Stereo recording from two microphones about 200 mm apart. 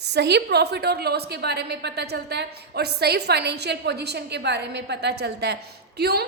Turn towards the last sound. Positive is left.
turn(degrees=-55)  # may be behind; listen again after turning